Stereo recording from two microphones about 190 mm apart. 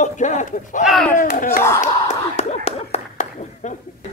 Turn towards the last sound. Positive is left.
turn(degrees=35)  # may be behind; listen again after turning